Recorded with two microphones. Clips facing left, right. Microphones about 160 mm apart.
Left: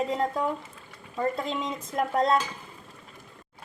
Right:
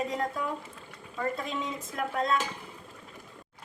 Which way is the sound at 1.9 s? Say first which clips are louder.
Left 5 dB; 35° left (ahead or behind).